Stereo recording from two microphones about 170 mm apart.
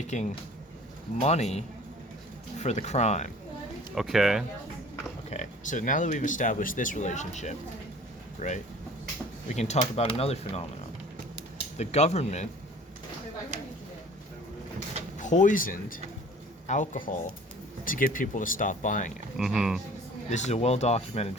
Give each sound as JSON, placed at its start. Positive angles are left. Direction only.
{"t": 0.1, "sound": "speech", "side_deg": 45}
{"t": 3.9, "sound": "speech", "side_deg": 0}
{"t": 5.3, "sound": "speech", "side_deg": 45}
{"t": 11.8, "sound": "speech", "side_deg": 40}
{"t": 13.5, "sound": "a sound", "side_deg": -45}
{"t": 15.2, "sound": "speech", "side_deg": 45}
{"t": 19.4, "sound": "speech", "side_deg": 0}
{"t": 20.3, "sound": "speech", "side_deg": 40}